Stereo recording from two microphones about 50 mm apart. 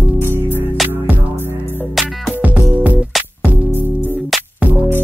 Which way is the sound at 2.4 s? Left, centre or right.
Right.